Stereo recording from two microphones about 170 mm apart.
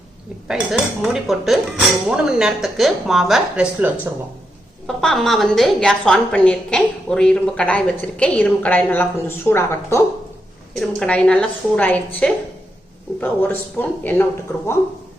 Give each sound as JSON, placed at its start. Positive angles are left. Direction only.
{"t": 0.4, "sound": "a woman's voice", "side_deg": 0}
{"t": 4.9, "sound": "a woman's voice", "side_deg": 0}